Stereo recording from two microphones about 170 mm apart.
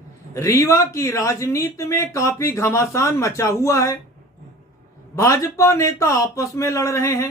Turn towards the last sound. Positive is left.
turn(degrees=15)  # may be behind; listen again after turning